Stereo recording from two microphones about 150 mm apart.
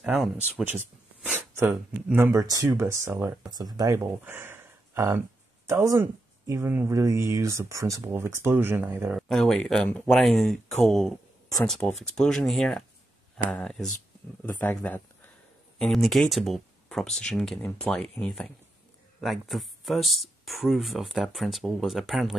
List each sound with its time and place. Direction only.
0.0 s speech: 5° right (ahead or behind)
9.3 s speech: 5° left (ahead or behind)